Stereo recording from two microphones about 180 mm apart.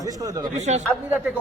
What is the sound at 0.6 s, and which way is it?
Speech, 40° right (ahead or behind).